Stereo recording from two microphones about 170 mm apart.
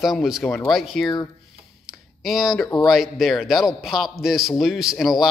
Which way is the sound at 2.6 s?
20° left (ahead or behind).